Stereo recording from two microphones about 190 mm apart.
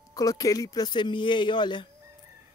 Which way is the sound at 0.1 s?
20° left (ahead or behind).